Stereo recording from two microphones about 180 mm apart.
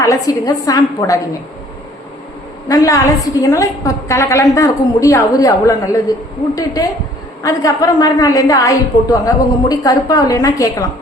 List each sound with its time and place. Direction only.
0.0 s a woman's voice: 20° left (ahead or behind)
2.6 s a woman's voice: 20° left (ahead or behind)